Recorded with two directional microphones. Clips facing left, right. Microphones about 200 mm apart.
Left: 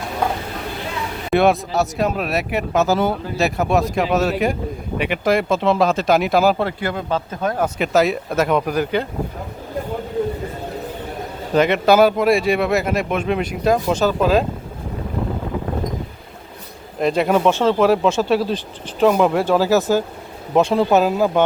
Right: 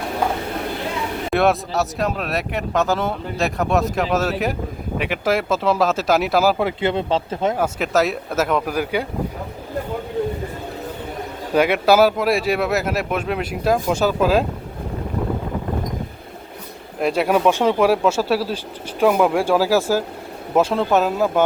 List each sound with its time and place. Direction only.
1.3 s speech: centre (ahead or behind)
6.7 s speech: 25° right (ahead or behind)
7.5 s speech: 5° right (ahead or behind)
11.5 s speech: 10° right (ahead or behind)
17.0 s speech: 5° right (ahead or behind)